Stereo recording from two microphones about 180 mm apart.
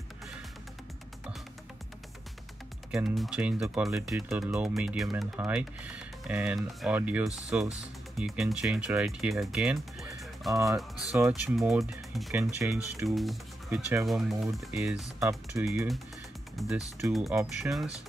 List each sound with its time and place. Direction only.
3.2 s speech: 5° right (ahead or behind)
10.5 s speech: 20° right (ahead or behind)
11.5 s speech: centre (ahead or behind)
12.5 s speech: 15° right (ahead or behind)
13.1 s speech: centre (ahead or behind)
15.1 s speech: 15° right (ahead or behind)
15.6 s speech: centre (ahead or behind)